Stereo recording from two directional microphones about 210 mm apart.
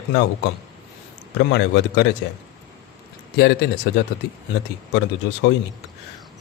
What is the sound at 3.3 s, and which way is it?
Speech, 55° left (ahead or behind).